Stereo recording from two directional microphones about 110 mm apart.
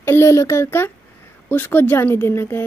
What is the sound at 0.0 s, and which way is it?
Speech, 25° left (ahead or behind).